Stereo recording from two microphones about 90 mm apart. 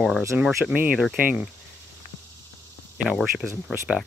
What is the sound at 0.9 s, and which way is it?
Speech, 10° right (ahead or behind).